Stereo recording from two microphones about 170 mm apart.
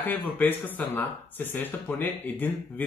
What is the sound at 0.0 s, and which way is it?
Speech, 10° left (ahead or behind).